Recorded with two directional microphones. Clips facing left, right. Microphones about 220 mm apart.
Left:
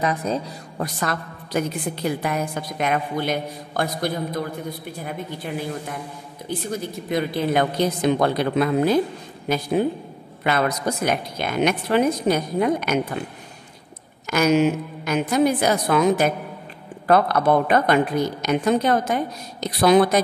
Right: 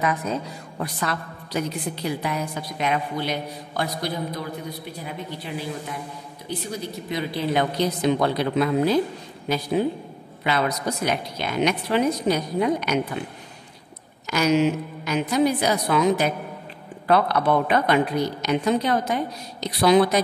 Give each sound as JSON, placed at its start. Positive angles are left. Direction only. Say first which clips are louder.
{"t": 0.0, "sound": "a woman's voice", "louder": "left 2 dB", "side_deg": 30}
{"t": 14.2, "sound": "a woman's voice", "louder": "left 2 dB", "side_deg": 50}